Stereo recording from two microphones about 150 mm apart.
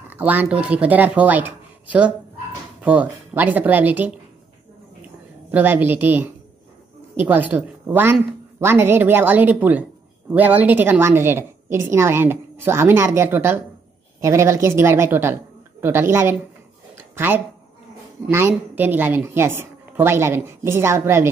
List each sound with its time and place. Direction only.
0.1 s a woman's voice: 10° right (ahead or behind)
5.5 s a woman's voice: 10° right (ahead or behind)
16.9 s a sound: 15° right (ahead or behind)
18.3 s a woman's voice: 15° right (ahead or behind)